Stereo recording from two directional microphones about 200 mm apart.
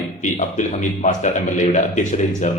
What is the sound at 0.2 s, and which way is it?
A man's voice, 40° left (ahead or behind).